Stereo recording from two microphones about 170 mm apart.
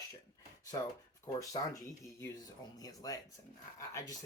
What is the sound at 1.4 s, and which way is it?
Speech, 20° left (ahead or behind).